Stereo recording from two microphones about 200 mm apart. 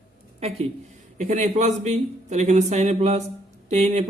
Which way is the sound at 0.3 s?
30° right (ahead or behind).